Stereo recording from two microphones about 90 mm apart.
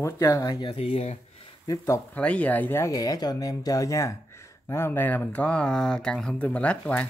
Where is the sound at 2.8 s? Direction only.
40° left (ahead or behind).